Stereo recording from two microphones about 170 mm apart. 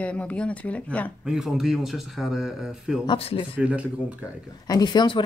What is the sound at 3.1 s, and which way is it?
Speech, 35° left (ahead or behind).